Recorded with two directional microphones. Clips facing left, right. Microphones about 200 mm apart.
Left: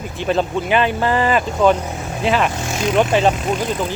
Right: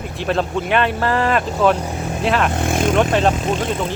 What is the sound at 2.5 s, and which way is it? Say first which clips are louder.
Speech: right 3 dB; 55° right (ahead or behind).